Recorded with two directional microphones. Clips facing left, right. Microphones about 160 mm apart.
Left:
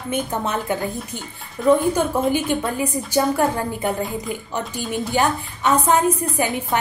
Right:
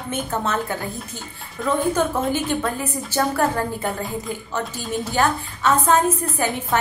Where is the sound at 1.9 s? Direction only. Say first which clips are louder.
Left 2 dB; 15° left (ahead or behind).